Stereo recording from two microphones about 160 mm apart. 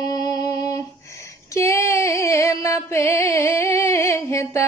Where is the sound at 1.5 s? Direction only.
15° left (ahead or behind).